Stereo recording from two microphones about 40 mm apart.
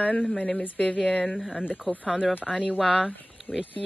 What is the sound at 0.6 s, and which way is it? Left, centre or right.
Speech, left.